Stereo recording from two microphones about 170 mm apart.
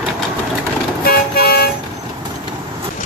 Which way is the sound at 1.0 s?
65° left (ahead or behind).